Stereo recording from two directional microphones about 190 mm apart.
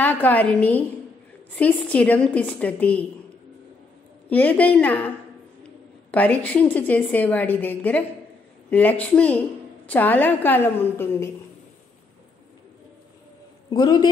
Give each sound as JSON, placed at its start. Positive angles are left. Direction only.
{"t": 0.0, "sound": "a woman's voice", "side_deg": 10}
{"t": 4.3, "sound": "a woman's voice", "side_deg": 10}
{"t": 6.1, "sound": "a woman's voice", "side_deg": 10}
{"t": 13.7, "sound": "a man's voice", "side_deg": 20}